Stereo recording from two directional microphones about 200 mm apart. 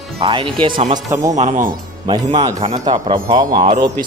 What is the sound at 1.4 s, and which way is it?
Speech, 40° right (ahead or behind).